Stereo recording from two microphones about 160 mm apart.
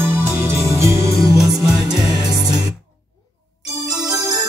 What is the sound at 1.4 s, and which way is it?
Music, centre (ahead or behind).